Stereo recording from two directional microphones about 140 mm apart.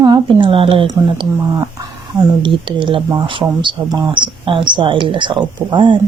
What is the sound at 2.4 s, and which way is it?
Speech, 35° right (ahead or behind).